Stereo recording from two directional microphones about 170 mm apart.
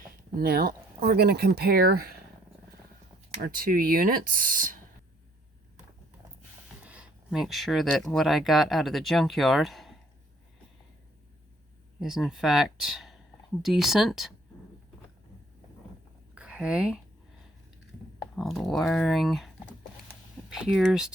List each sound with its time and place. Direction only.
0.3 s speech: 65° right (ahead or behind)
3.4 s speech: 60° right (ahead or behind)
6.8 s speech: 5° right (ahead or behind)
11.9 s speech: centre (ahead or behind)
16.3 s a sound: 5° right (ahead or behind)
18.3 s speech: centre (ahead or behind)
20.5 s speech: centre (ahead or behind)